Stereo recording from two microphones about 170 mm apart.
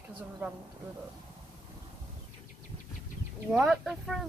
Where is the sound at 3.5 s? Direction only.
5° right (ahead or behind).